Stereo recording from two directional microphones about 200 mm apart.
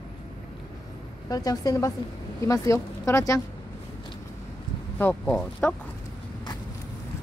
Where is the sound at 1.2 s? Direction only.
20° left (ahead or behind).